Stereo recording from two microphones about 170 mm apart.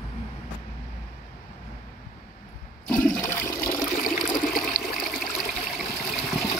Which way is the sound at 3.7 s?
50° left (ahead or behind).